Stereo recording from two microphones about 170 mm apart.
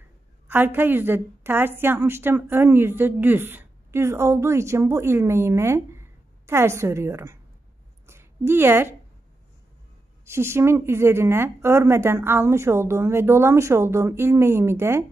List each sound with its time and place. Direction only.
0.5 s a woman's voice: 10° right (ahead or behind)
8.1 s a sound: 15° right (ahead or behind)
10.2 s a woman's voice: 15° right (ahead or behind)